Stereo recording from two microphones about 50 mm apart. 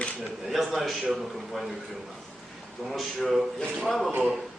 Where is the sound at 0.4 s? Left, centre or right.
Centre.